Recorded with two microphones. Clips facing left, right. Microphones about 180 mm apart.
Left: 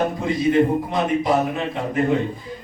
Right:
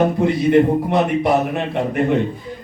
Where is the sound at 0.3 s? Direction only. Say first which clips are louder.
Right 1 dB; 65° right (ahead or behind).